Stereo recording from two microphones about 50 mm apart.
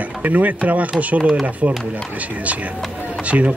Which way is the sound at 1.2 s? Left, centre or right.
Centre.